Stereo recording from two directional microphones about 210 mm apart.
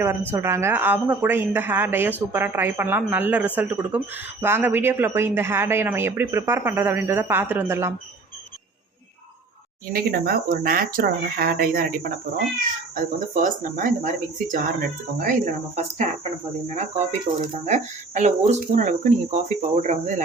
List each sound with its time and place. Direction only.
0.3 s a woman's voice: 10° right (ahead or behind)
9.9 s speech: 45° right (ahead or behind)
17.4 s speech: 35° right (ahead or behind)